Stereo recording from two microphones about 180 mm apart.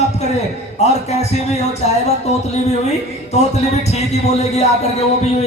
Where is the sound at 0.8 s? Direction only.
35° left (ahead or behind).